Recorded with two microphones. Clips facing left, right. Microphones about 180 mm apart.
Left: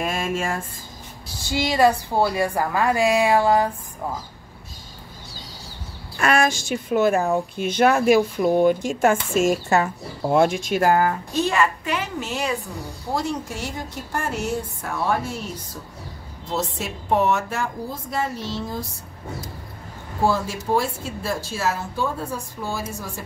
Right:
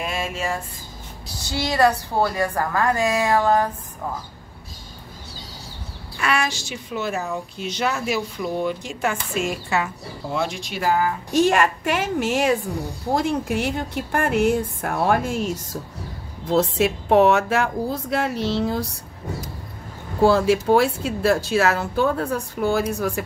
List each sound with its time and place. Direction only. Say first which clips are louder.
0.0 s a sound: left 2 dB; 45° left (ahead or behind)
1.5 s a woman's voice: left 1 dB; 10° left (ahead or behind)
6.1 s speech: left 4 dB; 50° left (ahead or behind)
11.8 s a woman's voice: right 5 dB; 85° right
13.1 s a woman's voice: right 4 dB; 55° right (ahead or behind); by 18.8 s 70° right (ahead or behind)
20.2 s a woman's voice: right 6 dB; 75° right (ahead or behind)